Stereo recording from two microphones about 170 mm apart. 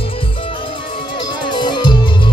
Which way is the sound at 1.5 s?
25° left (ahead or behind).